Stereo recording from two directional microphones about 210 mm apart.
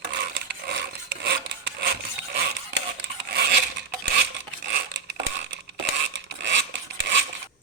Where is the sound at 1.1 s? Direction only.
55° right (ahead or behind).